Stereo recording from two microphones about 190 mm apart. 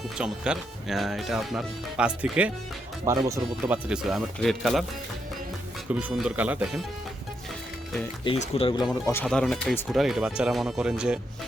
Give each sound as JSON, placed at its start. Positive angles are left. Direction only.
{"t": 0.2, "sound": "speech", "side_deg": -5}
{"t": 3.0, "sound": "speech", "side_deg": -20}
{"t": 3.8, "sound": "speech", "side_deg": -5}
{"t": 5.9, "sound": "speech", "side_deg": -5}
{"t": 8.2, "sound": "speech", "side_deg": 30}
{"t": 9.2, "sound": "speech", "side_deg": 0}